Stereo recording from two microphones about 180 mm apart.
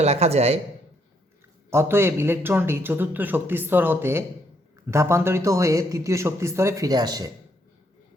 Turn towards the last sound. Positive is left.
turn(degrees=-20)  # may be behind; listen again after turning